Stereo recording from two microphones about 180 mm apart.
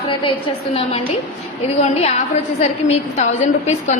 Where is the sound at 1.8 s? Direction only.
35° left (ahead or behind).